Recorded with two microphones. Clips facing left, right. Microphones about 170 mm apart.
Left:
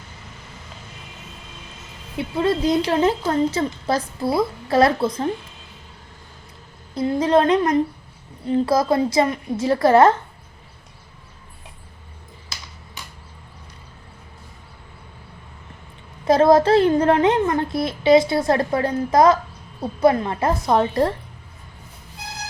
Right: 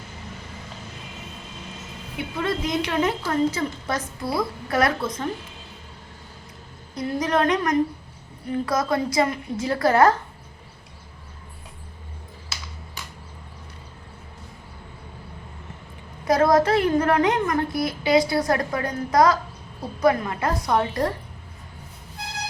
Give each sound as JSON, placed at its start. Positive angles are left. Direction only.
{"t": 2.1, "sound": "a child's voice", "side_deg": 30}
{"t": 6.9, "sound": "a child's voice", "side_deg": 25}
{"t": 16.2, "sound": "a child's voice", "side_deg": 25}